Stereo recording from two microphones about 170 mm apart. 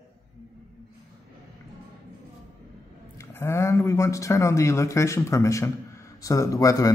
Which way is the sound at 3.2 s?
15° left (ahead or behind).